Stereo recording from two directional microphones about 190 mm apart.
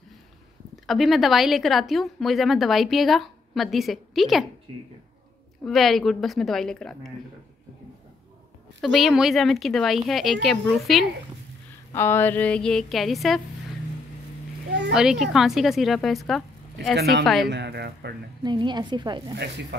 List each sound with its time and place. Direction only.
0.8 s speech: centre (ahead or behind)
5.6 s speech: centre (ahead or behind)
8.8 s speech: centre (ahead or behind)
11.9 s speech: 10° left (ahead or behind)
15.0 s speech: centre (ahead or behind)
16.9 s speech: 60° right (ahead or behind)
17.2 s speech: centre (ahead or behind)
17.5 s speech: 60° right (ahead or behind)
18.4 s speech: 25° right (ahead or behind)